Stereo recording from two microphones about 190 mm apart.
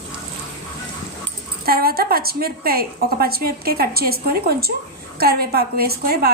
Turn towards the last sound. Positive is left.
turn(degrees=-55)  # may be behind; listen again after turning